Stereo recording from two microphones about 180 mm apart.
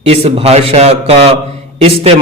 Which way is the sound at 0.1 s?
35° right (ahead or behind).